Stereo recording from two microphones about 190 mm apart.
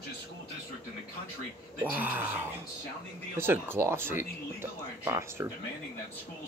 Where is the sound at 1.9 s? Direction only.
10° right (ahead or behind).